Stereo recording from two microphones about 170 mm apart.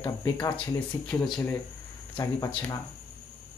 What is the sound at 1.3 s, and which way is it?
Speech, 10° left (ahead or behind).